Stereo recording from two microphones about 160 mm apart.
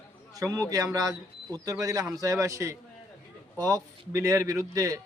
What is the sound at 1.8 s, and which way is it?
A man's voice, 20° right (ahead or behind).